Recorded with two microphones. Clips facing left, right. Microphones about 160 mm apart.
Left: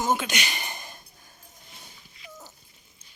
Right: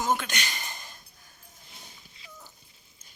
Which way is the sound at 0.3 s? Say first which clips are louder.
Left 4 dB; 80° left.